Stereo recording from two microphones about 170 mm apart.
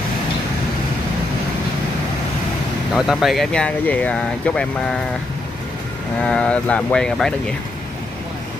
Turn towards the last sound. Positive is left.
turn(degrees=5)  # may be behind; listen again after turning